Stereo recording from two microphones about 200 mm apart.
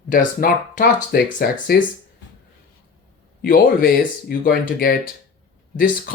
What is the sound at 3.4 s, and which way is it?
Speech, 45° left (ahead or behind).